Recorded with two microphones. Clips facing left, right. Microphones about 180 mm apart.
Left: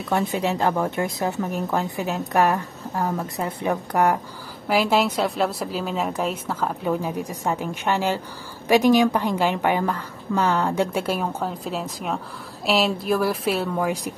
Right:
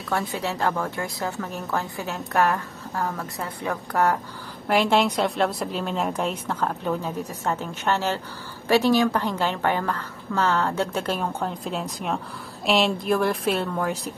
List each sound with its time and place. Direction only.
0.1 s a woman's voice: 20° left (ahead or behind)
4.6 s a woman's voice: 5° left (ahead or behind)